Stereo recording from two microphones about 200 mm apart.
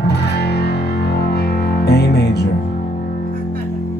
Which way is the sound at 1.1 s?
50° left (ahead or behind).